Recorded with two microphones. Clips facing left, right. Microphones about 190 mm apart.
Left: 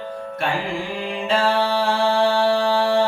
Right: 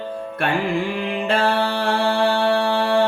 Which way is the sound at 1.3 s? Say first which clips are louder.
Left 1 dB; 60° right (ahead or behind).